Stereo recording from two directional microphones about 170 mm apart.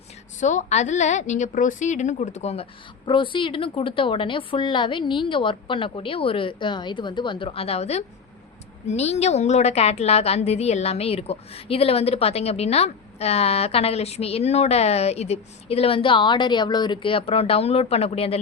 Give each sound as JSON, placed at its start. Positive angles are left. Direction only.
{"t": 0.3, "sound": "a woman's voice", "side_deg": 45}